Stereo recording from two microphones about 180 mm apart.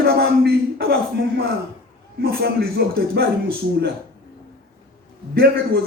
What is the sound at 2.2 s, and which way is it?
A man's voice, 60° right (ahead or behind).